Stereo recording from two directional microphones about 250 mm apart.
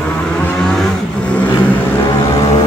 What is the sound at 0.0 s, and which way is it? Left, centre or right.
Vehicle, centre.